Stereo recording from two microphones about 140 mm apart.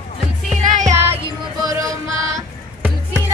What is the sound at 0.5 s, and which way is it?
Music, 65° right (ahead or behind).